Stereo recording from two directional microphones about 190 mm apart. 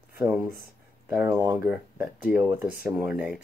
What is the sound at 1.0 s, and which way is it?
Speech, 10° right (ahead or behind).